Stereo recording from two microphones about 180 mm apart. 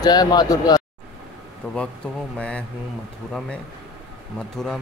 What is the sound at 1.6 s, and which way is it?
Speech, 5° left (ahead or behind).